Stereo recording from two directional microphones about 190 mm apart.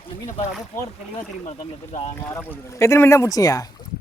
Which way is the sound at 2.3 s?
10° left (ahead or behind).